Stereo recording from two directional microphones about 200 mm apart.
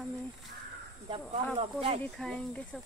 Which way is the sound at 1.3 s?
30° right (ahead or behind).